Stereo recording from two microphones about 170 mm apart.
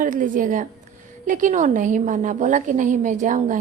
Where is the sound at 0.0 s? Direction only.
50° right (ahead or behind).